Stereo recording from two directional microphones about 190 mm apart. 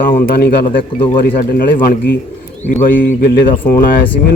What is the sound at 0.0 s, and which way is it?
A man's voice, 50° left (ahead or behind).